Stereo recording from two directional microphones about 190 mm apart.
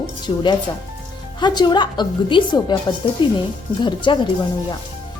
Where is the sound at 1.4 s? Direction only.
25° left (ahead or behind).